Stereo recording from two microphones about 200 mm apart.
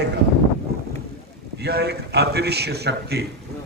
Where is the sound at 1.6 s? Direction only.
55° right (ahead or behind).